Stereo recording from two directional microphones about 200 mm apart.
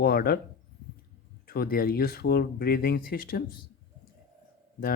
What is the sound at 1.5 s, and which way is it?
Speech, 50° left (ahead or behind).